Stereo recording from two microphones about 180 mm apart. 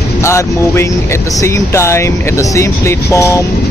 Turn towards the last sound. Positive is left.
turn(degrees=15)  # may be behind; listen again after turning